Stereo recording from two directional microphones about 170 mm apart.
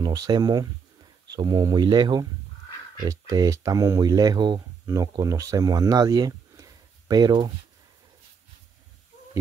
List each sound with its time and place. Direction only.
0.0 s speech: 25° right (ahead or behind)